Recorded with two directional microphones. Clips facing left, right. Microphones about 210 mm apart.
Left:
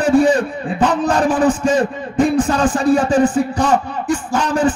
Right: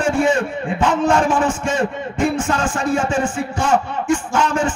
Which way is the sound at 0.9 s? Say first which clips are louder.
Right 2 dB; 35° left (ahead or behind).